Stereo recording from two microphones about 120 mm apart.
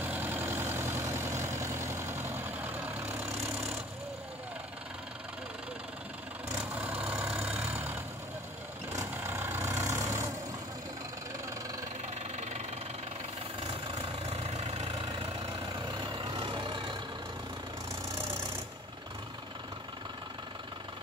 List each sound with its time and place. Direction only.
0.0 s vehicle: 15° right (ahead or behind)
6.6 s vehicle: 15° right (ahead or behind)
12.4 s engine knocking: 70° right (ahead or behind)
13.7 s vehicle: 50° right (ahead or behind)